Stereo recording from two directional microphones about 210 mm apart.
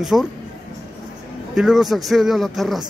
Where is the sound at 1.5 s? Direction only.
Centre (ahead or behind).